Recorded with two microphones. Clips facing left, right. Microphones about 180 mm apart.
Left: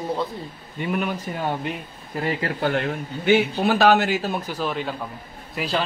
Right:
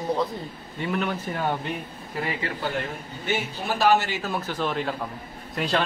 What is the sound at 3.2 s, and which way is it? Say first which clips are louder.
Speech: left 9 dB; 70° left (ahead or behind).